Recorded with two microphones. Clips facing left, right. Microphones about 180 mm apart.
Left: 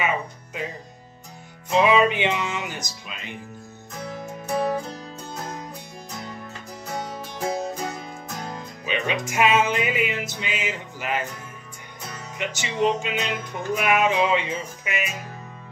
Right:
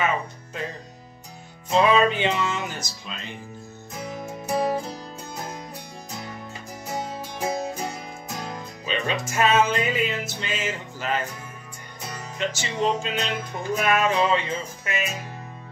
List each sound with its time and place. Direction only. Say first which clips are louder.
1.8 s music: left 1 dB; 10° left (ahead or behind)
4.0 s music: even; 10° right (ahead or behind)
7.0 s music: even; 5° right (ahead or behind)
8.8 s music: left 1 dB; 15° left (ahead or behind)
12.4 s music: left 1 dB; 15° left (ahead or behind)